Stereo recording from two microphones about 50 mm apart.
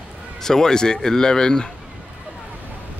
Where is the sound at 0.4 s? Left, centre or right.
Centre.